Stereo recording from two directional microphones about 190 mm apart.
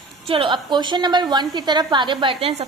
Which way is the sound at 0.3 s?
30° right (ahead or behind).